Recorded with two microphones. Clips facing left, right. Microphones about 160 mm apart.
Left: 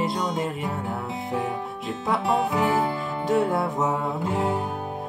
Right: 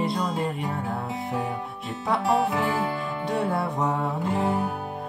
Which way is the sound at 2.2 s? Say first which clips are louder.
Right 2 dB; 20° left (ahead or behind).